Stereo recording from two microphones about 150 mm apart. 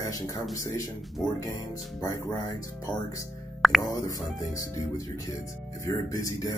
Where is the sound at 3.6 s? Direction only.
Centre (ahead or behind).